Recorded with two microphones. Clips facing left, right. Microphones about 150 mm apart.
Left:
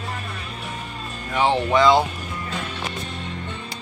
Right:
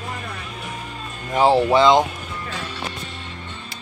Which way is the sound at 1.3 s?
40° right (ahead or behind).